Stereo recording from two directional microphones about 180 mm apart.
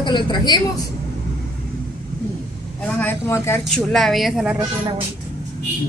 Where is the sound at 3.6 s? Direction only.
Centre (ahead or behind).